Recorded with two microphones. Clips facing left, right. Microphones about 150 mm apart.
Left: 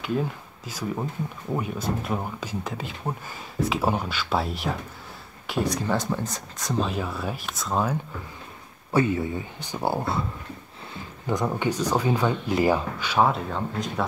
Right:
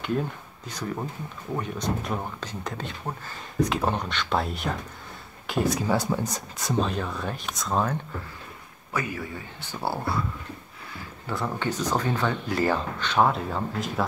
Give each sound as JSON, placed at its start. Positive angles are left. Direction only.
{"t": 0.7, "sound": "speech", "side_deg": 5}
{"t": 6.7, "sound": "speech", "side_deg": 0}
{"t": 8.9, "sound": "speech", "side_deg": 25}
{"t": 11.2, "sound": "speech", "side_deg": 15}